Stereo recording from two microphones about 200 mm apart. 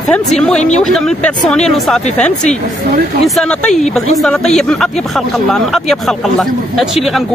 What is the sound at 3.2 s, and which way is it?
Speech, centre (ahead or behind).